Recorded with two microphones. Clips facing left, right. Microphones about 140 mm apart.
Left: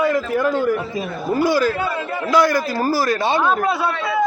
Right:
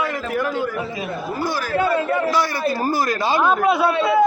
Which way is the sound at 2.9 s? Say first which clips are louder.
Left 1 dB; 30° left (ahead or behind).